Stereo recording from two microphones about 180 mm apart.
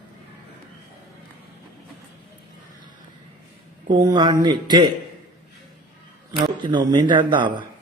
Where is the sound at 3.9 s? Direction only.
25° right (ahead or behind).